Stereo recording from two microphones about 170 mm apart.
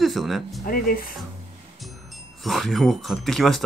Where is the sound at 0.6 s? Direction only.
55° left (ahead or behind).